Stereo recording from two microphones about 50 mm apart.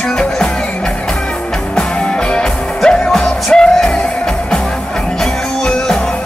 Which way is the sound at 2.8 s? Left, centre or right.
Centre.